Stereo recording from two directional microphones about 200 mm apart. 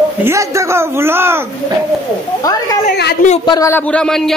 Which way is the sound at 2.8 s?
55° left (ahead or behind).